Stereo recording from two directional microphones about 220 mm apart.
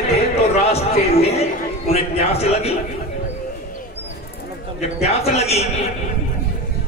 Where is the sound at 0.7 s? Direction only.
30° left (ahead or behind).